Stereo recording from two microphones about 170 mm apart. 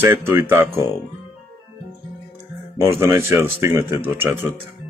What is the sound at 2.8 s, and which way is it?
A man's voice, 15° right (ahead or behind).